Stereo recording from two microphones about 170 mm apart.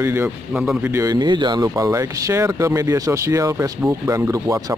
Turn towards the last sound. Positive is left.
turn(degrees=-20)  # may be behind; listen again after turning